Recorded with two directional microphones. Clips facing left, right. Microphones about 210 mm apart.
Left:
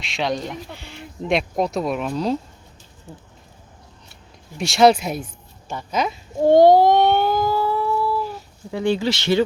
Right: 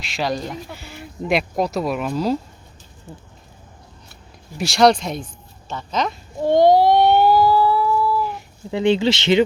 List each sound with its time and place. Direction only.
0.0 s speech: centre (ahead or behind)
4.5 s speech: centre (ahead or behind)
6.4 s a sound: 45° left (ahead or behind)
8.7 s speech: 25° right (ahead or behind)